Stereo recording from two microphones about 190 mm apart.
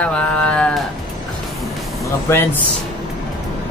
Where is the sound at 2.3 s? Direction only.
15° left (ahead or behind).